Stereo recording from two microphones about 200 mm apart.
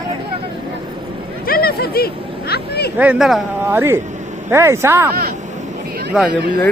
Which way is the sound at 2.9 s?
5° right (ahead or behind).